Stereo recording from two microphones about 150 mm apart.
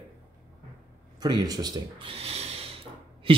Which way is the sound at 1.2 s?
25° right (ahead or behind).